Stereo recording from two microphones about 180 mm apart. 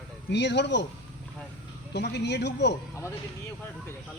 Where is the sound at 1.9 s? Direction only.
70° left (ahead or behind).